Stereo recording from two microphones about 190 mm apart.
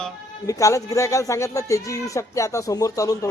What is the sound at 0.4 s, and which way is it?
Speech, 15° left (ahead or behind).